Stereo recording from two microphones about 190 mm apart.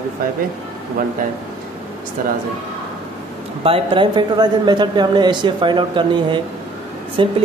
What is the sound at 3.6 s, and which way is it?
A man's voice, 30° right (ahead or behind).